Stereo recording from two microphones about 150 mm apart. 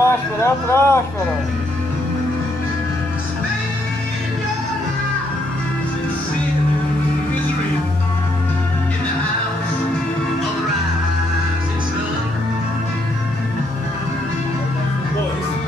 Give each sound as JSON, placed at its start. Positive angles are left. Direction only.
{"t": 0.0, "sound": "speech", "side_deg": 15}